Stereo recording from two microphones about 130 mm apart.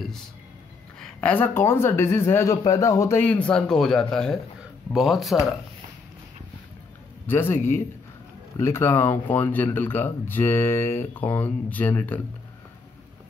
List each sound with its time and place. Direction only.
0.9 s speech: 5° left (ahead or behind)
7.2 s speech: 15° left (ahead or behind)